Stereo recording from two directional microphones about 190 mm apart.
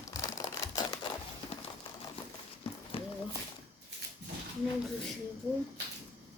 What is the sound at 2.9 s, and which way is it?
Horse, 30° left (ahead or behind).